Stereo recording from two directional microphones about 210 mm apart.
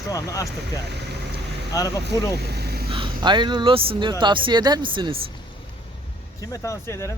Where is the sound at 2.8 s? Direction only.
25° right (ahead or behind).